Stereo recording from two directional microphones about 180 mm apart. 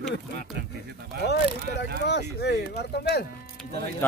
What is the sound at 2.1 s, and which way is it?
Speech, 70° left (ahead or behind).